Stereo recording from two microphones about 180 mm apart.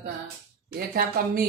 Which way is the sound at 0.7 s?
55° right (ahead or behind).